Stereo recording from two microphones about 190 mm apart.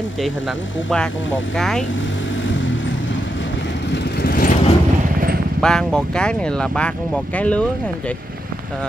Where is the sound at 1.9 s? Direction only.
80° left.